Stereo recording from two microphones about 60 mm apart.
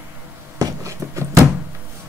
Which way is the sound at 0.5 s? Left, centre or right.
Right.